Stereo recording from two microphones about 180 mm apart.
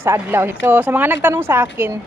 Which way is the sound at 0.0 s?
10° right (ahead or behind).